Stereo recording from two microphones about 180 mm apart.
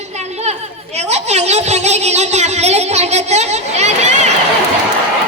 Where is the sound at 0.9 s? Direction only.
35° right (ahead or behind).